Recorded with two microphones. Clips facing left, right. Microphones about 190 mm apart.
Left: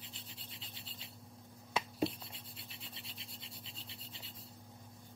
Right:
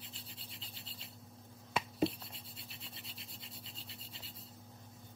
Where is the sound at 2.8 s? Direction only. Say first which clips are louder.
Even; centre (ahead or behind).